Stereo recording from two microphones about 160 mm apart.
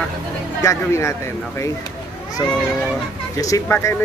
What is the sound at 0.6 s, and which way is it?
Speech, 20° left (ahead or behind).